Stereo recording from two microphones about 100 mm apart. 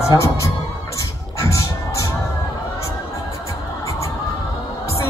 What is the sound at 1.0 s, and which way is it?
Music, 35° left (ahead or behind).